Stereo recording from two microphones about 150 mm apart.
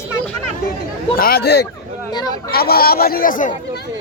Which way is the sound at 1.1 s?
85° left.